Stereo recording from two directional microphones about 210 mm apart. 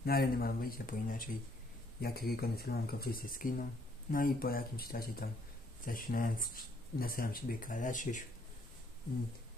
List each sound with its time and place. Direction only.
0.0 s speech: 45° left (ahead or behind)